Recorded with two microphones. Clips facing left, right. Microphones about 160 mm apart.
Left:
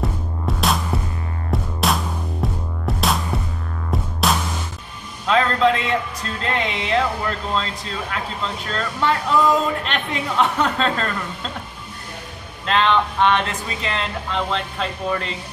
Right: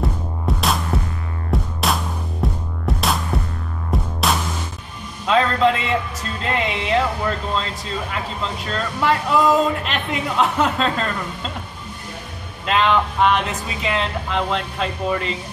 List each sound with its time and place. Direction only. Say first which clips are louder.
0.0 s music: right 1 dB; centre (ahead or behind)
6.5 s speech: right 1 dB; centre (ahead or behind)
12.6 s speech: even; 5° right (ahead or behind)